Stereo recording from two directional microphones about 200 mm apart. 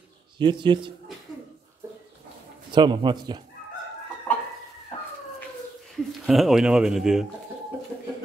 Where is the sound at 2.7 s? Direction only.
20° right (ahead or behind).